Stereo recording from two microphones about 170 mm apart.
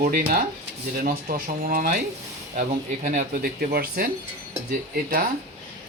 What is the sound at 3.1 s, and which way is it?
Speech, 60° right (ahead or behind).